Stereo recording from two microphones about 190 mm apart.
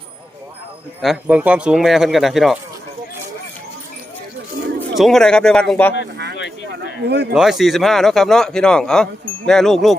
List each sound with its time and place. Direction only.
1.0 s speech: 5° right (ahead or behind)
4.9 s speech: centre (ahead or behind)
6.7 s a sound: 60° right (ahead or behind)
7.3 s speech: centre (ahead or behind)